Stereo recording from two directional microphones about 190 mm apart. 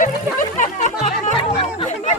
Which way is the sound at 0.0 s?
40° left (ahead or behind).